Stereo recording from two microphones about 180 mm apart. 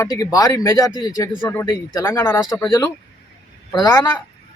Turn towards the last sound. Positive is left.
turn(degrees=20)  # may be behind; listen again after turning